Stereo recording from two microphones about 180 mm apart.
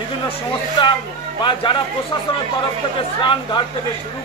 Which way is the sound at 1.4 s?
25° left (ahead or behind).